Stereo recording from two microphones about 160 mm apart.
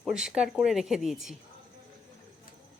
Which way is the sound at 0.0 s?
5° right (ahead or behind).